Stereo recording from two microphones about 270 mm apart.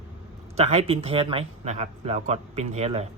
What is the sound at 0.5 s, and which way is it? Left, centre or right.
Speech, right.